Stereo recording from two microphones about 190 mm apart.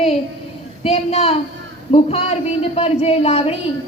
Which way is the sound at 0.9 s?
35° left (ahead or behind).